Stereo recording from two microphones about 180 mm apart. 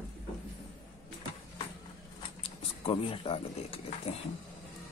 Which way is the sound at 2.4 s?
30° left (ahead or behind).